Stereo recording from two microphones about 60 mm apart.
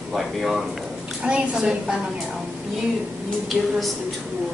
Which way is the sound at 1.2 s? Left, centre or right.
Centre.